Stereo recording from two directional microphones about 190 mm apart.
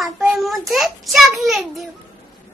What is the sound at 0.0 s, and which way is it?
A child's voice, centre (ahead or behind).